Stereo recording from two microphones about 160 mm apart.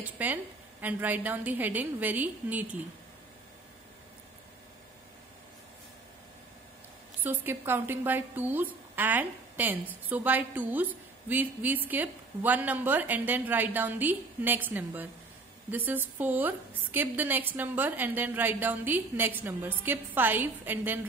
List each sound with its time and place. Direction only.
0.0 s a woman's voice: 10° right (ahead or behind)
7.2 s a woman's voice: 15° right (ahead or behind)